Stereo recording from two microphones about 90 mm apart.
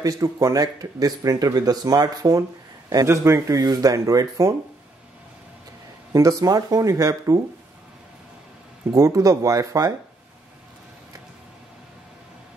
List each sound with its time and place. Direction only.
0.0 s speech: 35° right (ahead or behind)
6.1 s speech: 40° right (ahead or behind)
8.9 s speech: 40° right (ahead or behind)